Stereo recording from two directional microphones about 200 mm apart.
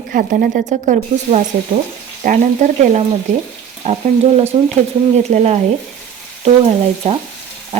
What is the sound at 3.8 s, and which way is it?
Stir, 30° right (ahead or behind).